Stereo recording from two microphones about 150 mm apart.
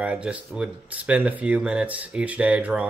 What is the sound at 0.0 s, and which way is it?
Speech, 10° right (ahead or behind).